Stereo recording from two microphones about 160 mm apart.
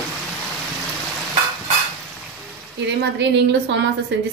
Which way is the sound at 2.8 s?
90° right.